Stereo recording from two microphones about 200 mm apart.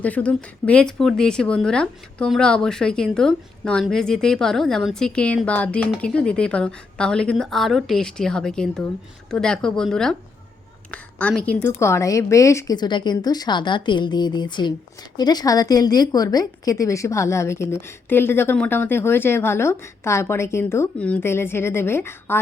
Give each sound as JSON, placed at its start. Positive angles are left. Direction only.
{"t": 0.0, "sound": "a woman's voice", "side_deg": 5}